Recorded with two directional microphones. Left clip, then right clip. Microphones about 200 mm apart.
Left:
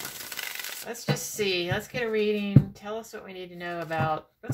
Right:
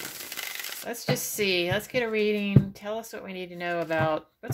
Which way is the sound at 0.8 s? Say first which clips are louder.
Right 3 dB; 50° right (ahead or behind).